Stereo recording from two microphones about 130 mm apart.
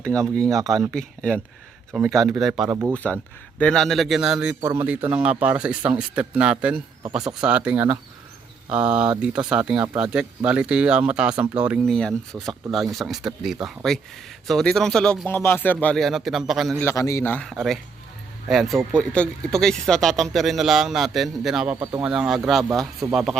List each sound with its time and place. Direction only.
0.3 s speech: 5° left (ahead or behind)
2.6 s speech: 15° right (ahead or behind)
2.9 s speech: 10° left (ahead or behind); by 4.5 s 5° right (ahead or behind)
4.6 s speech: 15° right (ahead or behind)
11.9 s speech: 5° left (ahead or behind)
16.8 s a man's voice: 25° left (ahead or behind)
17.5 s speech: centre (ahead or behind)